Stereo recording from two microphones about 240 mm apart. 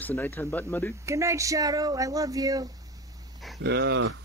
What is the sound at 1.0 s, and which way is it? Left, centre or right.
Speech, centre.